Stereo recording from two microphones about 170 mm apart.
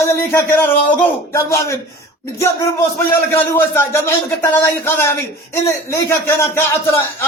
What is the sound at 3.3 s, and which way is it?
Speech, 15° left (ahead or behind).